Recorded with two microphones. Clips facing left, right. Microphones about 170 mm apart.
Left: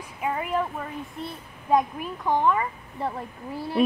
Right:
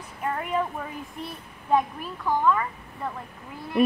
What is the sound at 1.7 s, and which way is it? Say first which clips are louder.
A child's voice: left 1 dB; 20° left (ahead or behind).